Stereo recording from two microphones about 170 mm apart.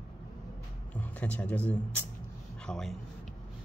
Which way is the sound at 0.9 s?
10° left (ahead or behind).